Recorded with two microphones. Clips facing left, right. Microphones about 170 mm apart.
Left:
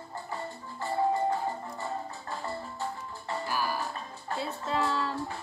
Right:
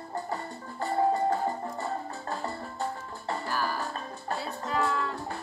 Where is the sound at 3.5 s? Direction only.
10° left (ahead or behind).